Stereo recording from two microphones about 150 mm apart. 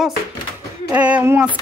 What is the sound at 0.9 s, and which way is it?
Female singing, 10° right (ahead or behind).